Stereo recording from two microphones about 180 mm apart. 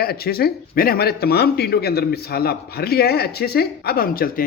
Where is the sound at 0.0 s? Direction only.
60° left (ahead or behind).